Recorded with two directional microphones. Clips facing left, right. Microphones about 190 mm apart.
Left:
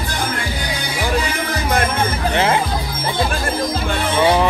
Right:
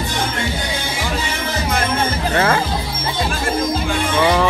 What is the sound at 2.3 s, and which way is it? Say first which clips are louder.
Music: even; 20° left (ahead or behind).